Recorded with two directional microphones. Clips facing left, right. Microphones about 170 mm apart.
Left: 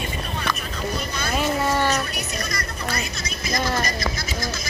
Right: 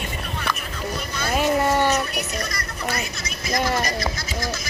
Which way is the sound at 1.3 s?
15° right (ahead or behind).